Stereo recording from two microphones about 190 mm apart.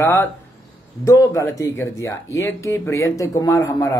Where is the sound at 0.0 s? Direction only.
15° left (ahead or behind).